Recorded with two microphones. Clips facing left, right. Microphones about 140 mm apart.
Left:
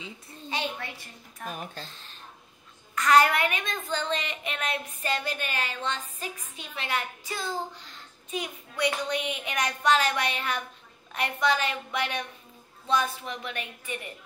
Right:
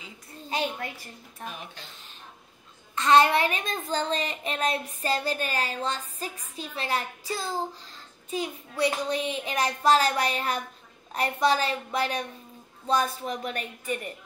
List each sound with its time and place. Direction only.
0.5 s a woman's voice: 45° right (ahead or behind)
1.4 s speech: 45° left (ahead or behind)
3.0 s a child's voice: 25° right (ahead or behind); by 13.9 s 40° right (ahead or behind)